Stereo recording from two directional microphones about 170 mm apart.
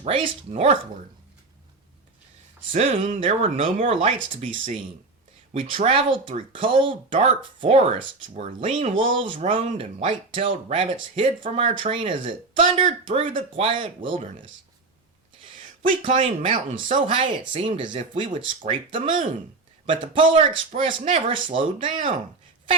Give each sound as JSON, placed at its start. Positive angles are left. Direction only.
{"t": 0.0, "sound": "a woman's voice", "side_deg": -35}
{"t": 2.7, "sound": "a woman's voice", "side_deg": -40}
{"t": 5.5, "sound": "a woman's voice", "side_deg": -30}
{"t": 15.8, "sound": "a woman's voice", "side_deg": -40}
{"t": 16.9, "sound": "a woman's voice", "side_deg": -30}